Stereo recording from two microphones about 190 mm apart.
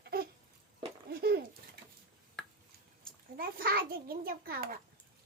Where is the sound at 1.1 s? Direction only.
55° right (ahead or behind).